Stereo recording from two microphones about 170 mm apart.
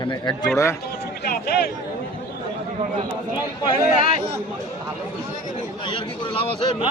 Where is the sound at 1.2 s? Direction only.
70° left (ahead or behind).